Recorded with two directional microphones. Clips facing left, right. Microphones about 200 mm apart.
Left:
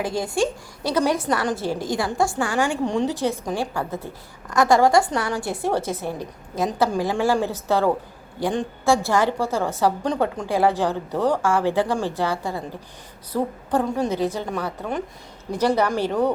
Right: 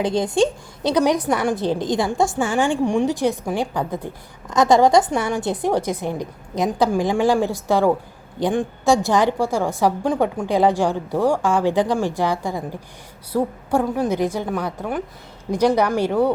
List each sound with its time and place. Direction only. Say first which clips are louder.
0.0 s a woman's voice: right 4 dB; 20° right (ahead or behind)